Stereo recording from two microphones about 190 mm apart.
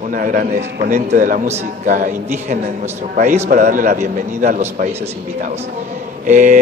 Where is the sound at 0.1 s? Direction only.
45° right (ahead or behind).